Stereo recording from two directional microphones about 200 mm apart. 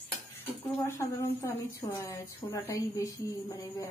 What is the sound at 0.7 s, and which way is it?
A woman's voice, 10° left (ahead or behind).